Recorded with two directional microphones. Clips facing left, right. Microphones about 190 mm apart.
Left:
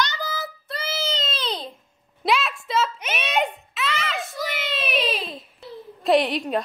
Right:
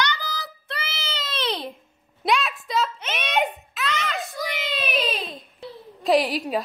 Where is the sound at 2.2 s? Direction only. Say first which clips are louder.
Even; centre (ahead or behind).